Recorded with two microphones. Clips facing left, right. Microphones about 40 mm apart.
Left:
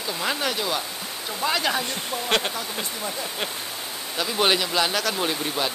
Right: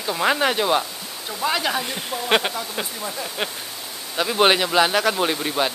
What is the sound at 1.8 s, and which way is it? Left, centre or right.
Speech, centre.